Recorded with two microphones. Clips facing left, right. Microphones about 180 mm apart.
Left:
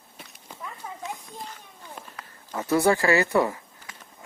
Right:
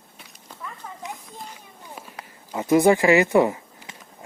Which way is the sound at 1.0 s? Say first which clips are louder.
Even; 15° right (ahead or behind).